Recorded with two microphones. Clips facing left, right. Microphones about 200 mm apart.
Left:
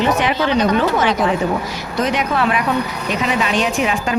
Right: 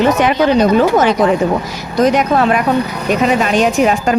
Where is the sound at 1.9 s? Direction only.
40° right (ahead or behind).